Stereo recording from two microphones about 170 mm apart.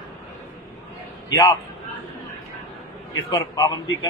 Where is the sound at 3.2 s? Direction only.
20° left (ahead or behind).